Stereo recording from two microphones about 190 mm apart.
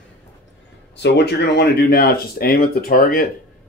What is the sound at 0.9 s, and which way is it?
Speech, 65° left (ahead or behind).